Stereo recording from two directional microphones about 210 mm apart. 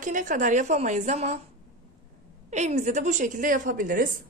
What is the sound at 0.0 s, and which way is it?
A woman's voice, 40° right (ahead or behind).